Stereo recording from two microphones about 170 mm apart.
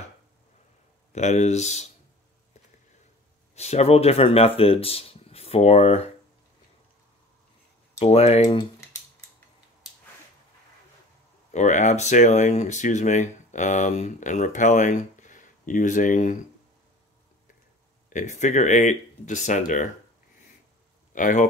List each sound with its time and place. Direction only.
1.1 s speech: 40° left (ahead or behind)
3.5 s speech: 40° left (ahead or behind)
8.0 s speech: 35° left (ahead or behind)
11.5 s speech: 45° left (ahead or behind)
18.1 s speech: 45° left (ahead or behind)
21.1 s speech: 50° left (ahead or behind)